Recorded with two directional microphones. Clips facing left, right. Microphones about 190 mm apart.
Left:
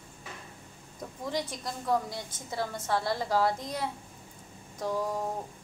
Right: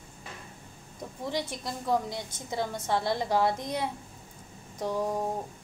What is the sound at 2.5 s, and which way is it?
A woman's voice, 20° right (ahead or behind).